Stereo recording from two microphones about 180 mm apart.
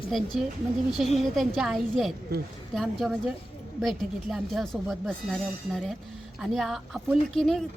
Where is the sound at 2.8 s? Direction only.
Centre (ahead or behind).